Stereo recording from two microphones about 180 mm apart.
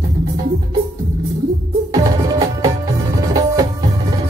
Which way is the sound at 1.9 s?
20° right (ahead or behind).